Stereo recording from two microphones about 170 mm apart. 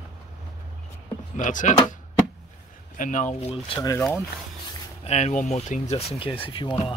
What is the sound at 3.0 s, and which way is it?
Speech, 50° left (ahead or behind).